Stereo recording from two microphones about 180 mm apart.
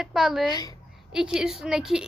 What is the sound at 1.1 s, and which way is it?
Speech, 5° right (ahead or behind).